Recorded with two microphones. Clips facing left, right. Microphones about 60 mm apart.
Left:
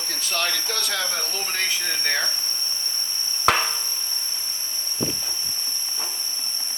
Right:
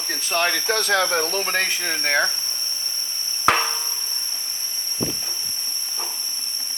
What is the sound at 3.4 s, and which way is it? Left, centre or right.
Chop, centre.